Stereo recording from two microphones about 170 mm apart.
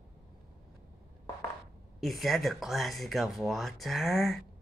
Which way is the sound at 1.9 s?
Centre (ahead or behind).